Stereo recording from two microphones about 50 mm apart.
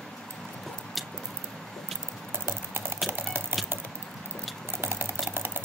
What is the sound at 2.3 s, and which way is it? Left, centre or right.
Typing, right.